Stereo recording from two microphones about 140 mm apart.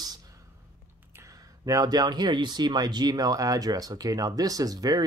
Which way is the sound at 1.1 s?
25° right (ahead or behind).